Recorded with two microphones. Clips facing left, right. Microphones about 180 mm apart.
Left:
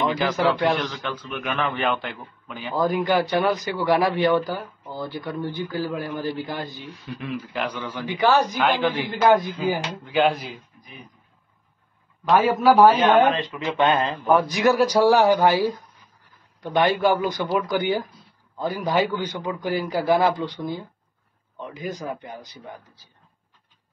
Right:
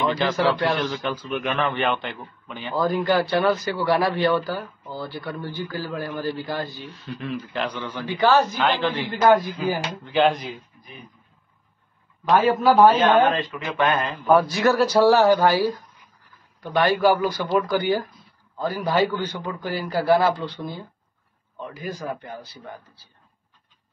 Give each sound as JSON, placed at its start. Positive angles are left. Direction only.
{"t": 0.0, "sound": "a man's voice", "side_deg": 0}
{"t": 1.4, "sound": "a man's voice", "side_deg": 5}
{"t": 2.7, "sound": "a man's voice", "side_deg": 15}
{"t": 12.3, "sound": "a man's voice", "side_deg": 5}